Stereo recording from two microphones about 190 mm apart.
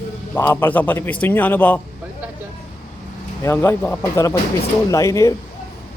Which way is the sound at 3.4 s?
10° left (ahead or behind).